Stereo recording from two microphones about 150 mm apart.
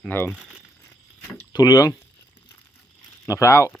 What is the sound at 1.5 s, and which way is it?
Speech, 25° left (ahead or behind).